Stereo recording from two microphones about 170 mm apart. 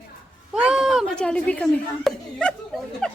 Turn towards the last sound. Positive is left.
turn(degrees=5)  # may be behind; listen again after turning